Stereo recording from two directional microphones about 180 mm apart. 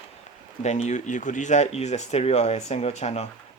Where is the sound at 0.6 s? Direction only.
40° left (ahead or behind).